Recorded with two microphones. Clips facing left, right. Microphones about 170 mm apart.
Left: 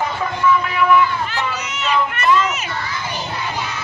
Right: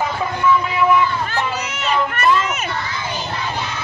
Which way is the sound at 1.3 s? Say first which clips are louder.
Right 2 dB; 50° right (ahead or behind).